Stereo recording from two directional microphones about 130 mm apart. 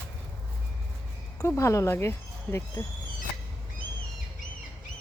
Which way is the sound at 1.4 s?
25° left (ahead or behind).